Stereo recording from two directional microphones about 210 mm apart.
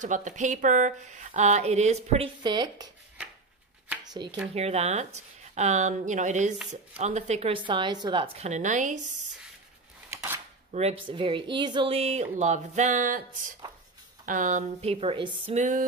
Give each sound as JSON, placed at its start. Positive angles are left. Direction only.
{"t": 0.0, "sound": "speech", "side_deg": -35}
{"t": 4.0, "sound": "speech", "side_deg": -20}
{"t": 4.6, "sound": "speech", "side_deg": -30}
{"t": 10.0, "sound": "a sound", "side_deg": -10}
{"t": 10.7, "sound": "speech", "side_deg": -30}